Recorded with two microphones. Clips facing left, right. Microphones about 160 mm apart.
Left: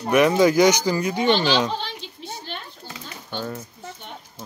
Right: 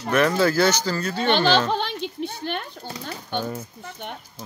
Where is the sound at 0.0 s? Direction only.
15° left (ahead or behind).